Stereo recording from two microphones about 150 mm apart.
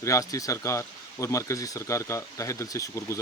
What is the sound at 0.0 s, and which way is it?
Speech, 20° left (ahead or behind).